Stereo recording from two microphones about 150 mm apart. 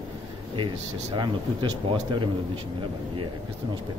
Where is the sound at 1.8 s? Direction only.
35° right (ahead or behind).